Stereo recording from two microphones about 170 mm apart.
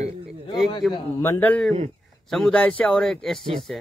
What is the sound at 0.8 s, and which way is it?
A man's voice, centre (ahead or behind).